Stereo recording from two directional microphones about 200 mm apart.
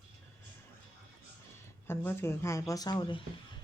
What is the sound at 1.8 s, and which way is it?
Speech, 10° left (ahead or behind).